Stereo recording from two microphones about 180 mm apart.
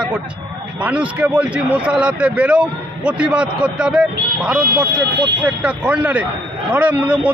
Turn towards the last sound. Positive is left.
turn(degrees=-5)  # may be behind; listen again after turning